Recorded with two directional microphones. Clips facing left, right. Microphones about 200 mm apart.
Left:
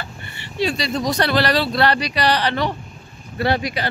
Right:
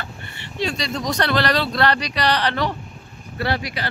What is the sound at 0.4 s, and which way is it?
Speech, 5° left (ahead or behind).